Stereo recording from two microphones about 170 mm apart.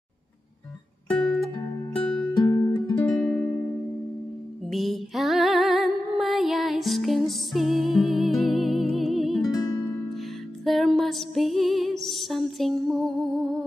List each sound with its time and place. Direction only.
1.2 s music: 5° left (ahead or behind)
2.3 s music: 25° left (ahead or behind)
3.1 s music: 10° left (ahead or behind)
4.6 s music: centre (ahead or behind)
9.5 s music: 20° left (ahead or behind)
10.6 s music: centre (ahead or behind)